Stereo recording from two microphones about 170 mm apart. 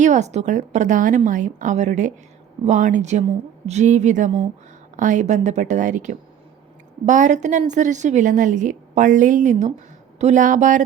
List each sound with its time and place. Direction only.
0.0 s a woman's voice: 45° right (ahead or behind)